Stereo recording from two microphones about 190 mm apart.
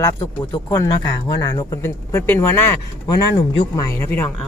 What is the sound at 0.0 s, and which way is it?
Speech, 15° left (ahead or behind).